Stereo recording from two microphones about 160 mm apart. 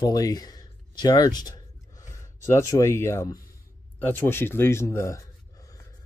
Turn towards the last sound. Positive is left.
turn(degrees=20)  # may be behind; listen again after turning